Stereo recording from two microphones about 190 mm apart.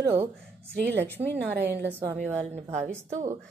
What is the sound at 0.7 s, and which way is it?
Speech, 60° right (ahead or behind).